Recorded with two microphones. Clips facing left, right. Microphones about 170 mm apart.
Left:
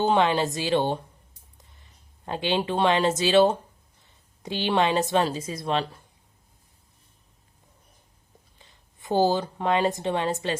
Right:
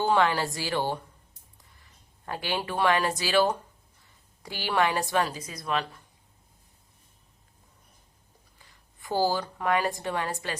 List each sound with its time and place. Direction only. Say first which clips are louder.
0.0 s a woman's voice: left 3 dB; 20° left (ahead or behind)
8.5 s speech: left 2 dB; 20° left (ahead or behind)